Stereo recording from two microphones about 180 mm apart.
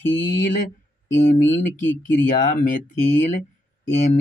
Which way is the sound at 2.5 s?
45° left (ahead or behind).